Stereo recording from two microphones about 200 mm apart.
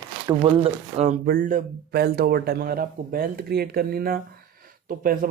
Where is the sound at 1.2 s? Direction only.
45° right (ahead or behind).